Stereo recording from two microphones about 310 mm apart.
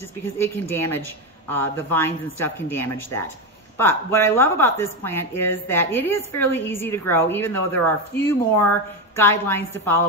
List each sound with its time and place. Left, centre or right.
0.4 s speech: centre